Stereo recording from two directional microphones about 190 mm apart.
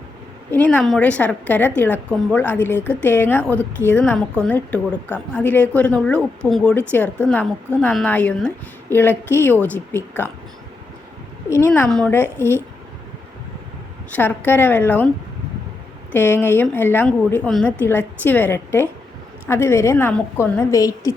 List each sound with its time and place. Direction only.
0.5 s a woman's voice: 5° left (ahead or behind)
11.4 s a woman's voice: 15° left (ahead or behind)
14.1 s a woman's voice: 10° left (ahead or behind)
16.1 s a woman's voice: 10° left (ahead or behind)